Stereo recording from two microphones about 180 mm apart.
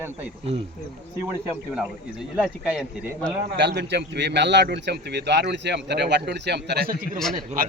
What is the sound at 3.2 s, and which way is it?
A man's voice, 70° right (ahead or behind).